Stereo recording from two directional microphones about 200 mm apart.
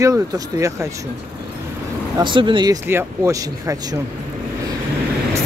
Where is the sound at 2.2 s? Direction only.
25° right (ahead or behind).